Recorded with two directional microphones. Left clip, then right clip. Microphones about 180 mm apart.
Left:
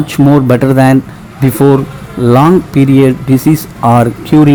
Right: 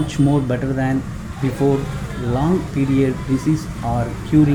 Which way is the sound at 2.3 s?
60° left (ahead or behind).